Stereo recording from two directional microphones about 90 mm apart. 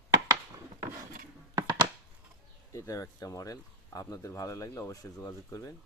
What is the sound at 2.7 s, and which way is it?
Speech, 40° left (ahead or behind).